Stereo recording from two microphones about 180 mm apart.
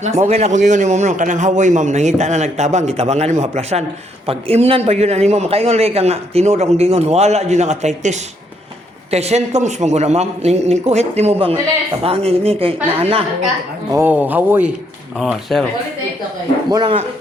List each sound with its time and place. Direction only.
0.0 s a man's voice: 40° right (ahead or behind)
13.9 s speech: 10° right (ahead or behind)
16.6 s speech: 25° right (ahead or behind)